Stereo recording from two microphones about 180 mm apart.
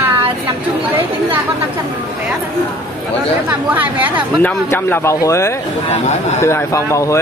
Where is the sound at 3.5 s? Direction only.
10° right (ahead or behind).